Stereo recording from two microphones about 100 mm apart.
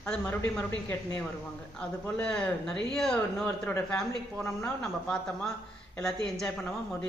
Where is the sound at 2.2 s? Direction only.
10° left (ahead or behind).